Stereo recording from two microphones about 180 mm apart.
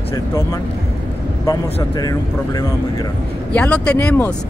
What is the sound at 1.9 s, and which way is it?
Speech, 20° left (ahead or behind).